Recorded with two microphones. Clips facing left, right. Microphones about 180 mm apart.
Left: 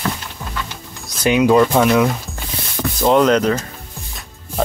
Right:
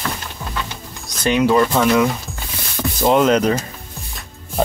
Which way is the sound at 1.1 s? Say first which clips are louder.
Left 2 dB; 10° left (ahead or behind).